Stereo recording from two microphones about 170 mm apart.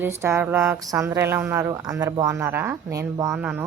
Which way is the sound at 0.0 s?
15° right (ahead or behind).